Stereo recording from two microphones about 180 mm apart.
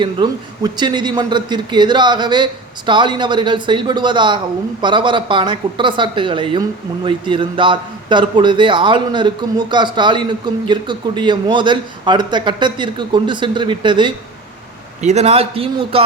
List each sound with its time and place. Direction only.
0.0 s a woman's voice: 25° right (ahead or behind)